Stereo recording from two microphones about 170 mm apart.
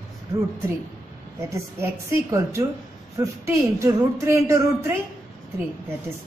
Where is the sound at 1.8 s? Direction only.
15° right (ahead or behind).